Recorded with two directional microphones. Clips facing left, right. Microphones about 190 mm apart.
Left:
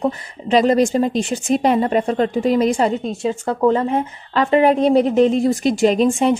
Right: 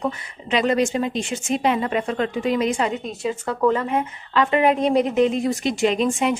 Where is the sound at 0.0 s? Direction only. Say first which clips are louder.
Left 5 dB; 35° left (ahead or behind).